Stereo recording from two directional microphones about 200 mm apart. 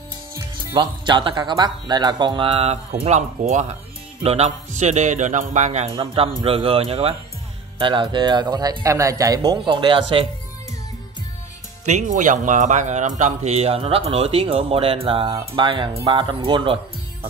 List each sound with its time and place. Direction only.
0.3 s speech: 20° right (ahead or behind)
11.8 s speech: 35° right (ahead or behind)